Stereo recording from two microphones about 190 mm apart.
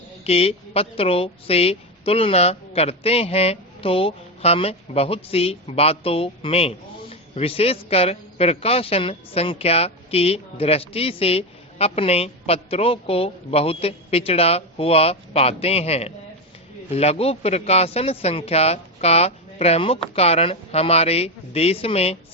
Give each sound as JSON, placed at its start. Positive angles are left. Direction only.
{"t": 0.3, "sound": "a woman's voice", "side_deg": 30}